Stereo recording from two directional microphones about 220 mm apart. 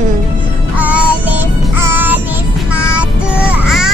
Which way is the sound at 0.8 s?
5° right (ahead or behind).